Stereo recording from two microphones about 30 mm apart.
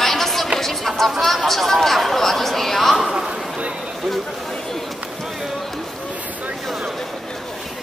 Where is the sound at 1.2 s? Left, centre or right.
Centre.